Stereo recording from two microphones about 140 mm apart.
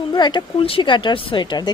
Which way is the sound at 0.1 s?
30° left (ahead or behind).